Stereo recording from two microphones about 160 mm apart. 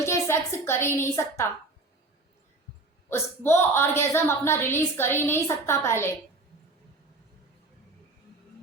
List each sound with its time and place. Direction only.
0.0 s a woman's voice: 15° left (ahead or behind)
3.1 s speech: 15° left (ahead or behind)